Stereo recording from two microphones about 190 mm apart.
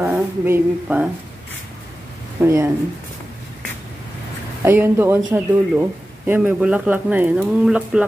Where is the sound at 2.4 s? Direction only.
10° right (ahead or behind).